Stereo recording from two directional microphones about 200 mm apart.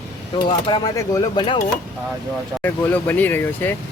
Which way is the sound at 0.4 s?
20° left (ahead or behind).